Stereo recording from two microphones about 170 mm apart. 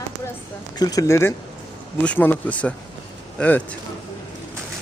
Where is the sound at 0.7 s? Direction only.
20° left (ahead or behind).